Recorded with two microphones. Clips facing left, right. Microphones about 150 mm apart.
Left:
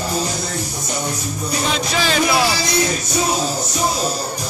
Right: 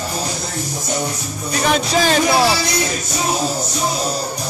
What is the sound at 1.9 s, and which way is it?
Speech, 40° right (ahead or behind).